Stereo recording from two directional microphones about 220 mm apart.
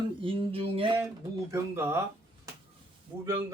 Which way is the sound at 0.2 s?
25° right (ahead or behind).